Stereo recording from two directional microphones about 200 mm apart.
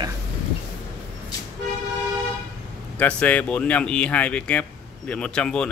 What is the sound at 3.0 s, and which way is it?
Speech, 5° left (ahead or behind).